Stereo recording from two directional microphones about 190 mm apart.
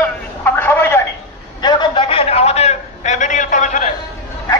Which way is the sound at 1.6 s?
25° left (ahead or behind).